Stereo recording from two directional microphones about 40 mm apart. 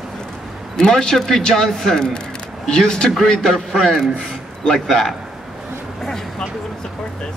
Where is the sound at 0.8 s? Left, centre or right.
Centre.